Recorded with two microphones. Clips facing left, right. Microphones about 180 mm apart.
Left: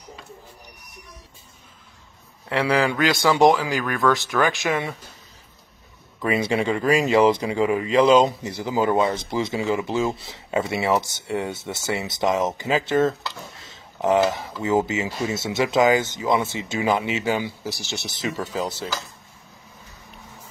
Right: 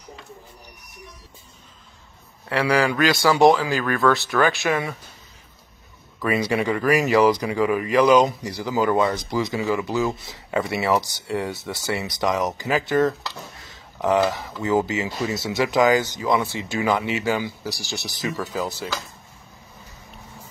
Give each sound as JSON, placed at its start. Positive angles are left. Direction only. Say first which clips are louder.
{"t": 2.5, "sound": "speech", "louder": "right 1 dB", "side_deg": 20}
{"t": 6.2, "sound": "speech", "louder": "even", "side_deg": 25}